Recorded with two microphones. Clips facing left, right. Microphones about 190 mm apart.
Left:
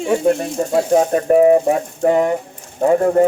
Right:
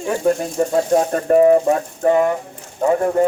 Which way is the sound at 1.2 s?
15° left (ahead or behind).